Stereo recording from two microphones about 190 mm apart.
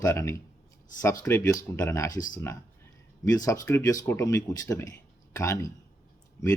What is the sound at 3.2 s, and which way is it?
Speech, 15° left (ahead or behind).